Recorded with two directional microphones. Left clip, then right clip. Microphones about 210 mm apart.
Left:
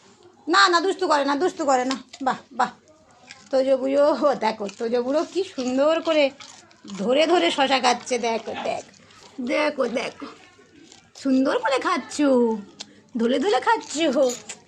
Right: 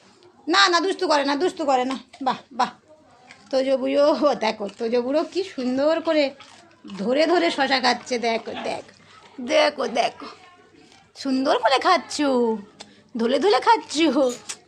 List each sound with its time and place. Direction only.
0.4 s speech: 5° right (ahead or behind)
8.3 s speech: 15° right (ahead or behind)
12.8 s a sound: 5° right (ahead or behind)
13.1 s speech: 20° right (ahead or behind)